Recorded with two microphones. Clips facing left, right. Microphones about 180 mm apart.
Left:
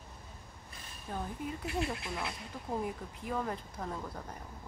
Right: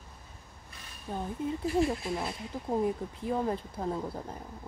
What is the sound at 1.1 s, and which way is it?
Speech, 20° right (ahead or behind).